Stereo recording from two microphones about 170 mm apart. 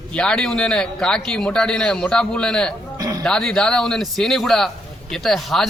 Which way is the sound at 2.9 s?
25° right (ahead or behind).